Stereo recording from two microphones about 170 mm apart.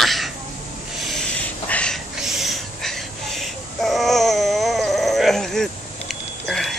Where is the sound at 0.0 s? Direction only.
Centre (ahead or behind).